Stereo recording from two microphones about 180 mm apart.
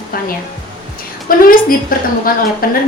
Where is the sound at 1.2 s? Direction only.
55° left (ahead or behind).